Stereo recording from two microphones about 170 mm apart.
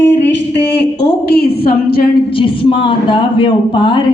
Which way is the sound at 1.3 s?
70° left (ahead or behind).